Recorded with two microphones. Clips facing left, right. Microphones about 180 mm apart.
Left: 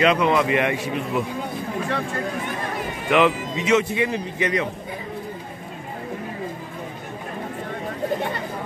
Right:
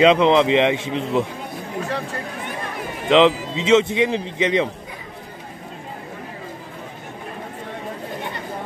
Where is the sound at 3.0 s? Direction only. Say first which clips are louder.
Right 4 dB; 20° right (ahead or behind).